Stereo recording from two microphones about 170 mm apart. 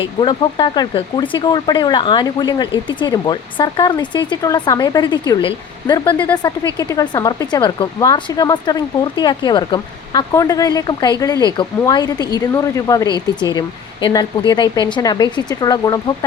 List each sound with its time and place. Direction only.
0.0 s speech: 30° left (ahead or behind)
6.1 s speech: 10° left (ahead or behind)
6.7 s speech: 25° left (ahead or behind)